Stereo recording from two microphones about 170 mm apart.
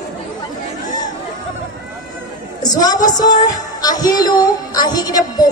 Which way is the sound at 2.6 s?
25° left (ahead or behind).